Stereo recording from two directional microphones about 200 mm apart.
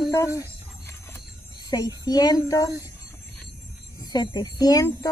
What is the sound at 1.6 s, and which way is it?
A woman's voice, 20° left (ahead or behind).